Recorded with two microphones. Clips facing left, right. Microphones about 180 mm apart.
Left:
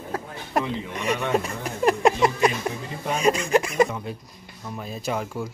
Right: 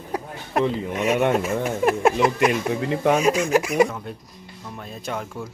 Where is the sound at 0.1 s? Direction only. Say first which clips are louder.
Right 3 dB; 15° right (ahead or behind).